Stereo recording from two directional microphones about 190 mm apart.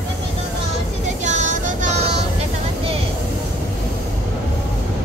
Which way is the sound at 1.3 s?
40° right (ahead or behind).